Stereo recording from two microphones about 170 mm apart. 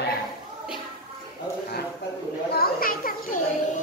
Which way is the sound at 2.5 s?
60° left (ahead or behind).